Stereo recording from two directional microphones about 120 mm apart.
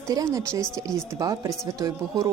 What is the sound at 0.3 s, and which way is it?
Speech, 25° right (ahead or behind).